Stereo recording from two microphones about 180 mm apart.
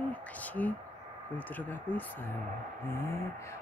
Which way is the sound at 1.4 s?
10° left (ahead or behind).